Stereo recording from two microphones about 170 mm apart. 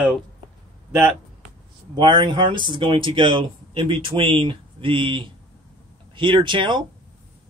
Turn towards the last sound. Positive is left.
turn(degrees=-30)  # may be behind; listen again after turning